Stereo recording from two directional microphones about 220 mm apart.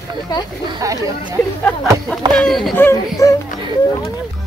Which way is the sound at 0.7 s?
15° right (ahead or behind).